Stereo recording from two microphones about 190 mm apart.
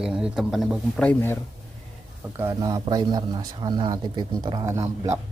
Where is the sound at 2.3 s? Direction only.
15° right (ahead or behind).